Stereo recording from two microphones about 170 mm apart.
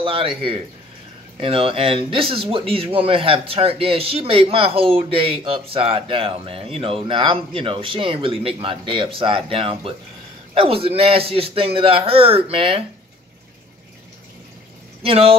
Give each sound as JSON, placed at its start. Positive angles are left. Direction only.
{"t": 0.0, "sound": "speech", "side_deg": -30}
{"t": 15.0, "sound": "speech", "side_deg": -35}